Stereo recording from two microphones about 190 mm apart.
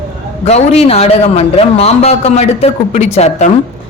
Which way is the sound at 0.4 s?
35° left (ahead or behind).